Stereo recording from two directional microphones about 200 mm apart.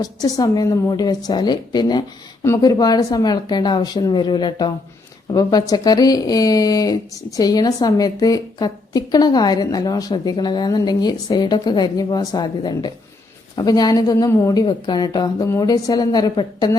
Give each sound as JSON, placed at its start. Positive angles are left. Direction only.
{"t": 0.0, "sound": "speech", "side_deg": 20}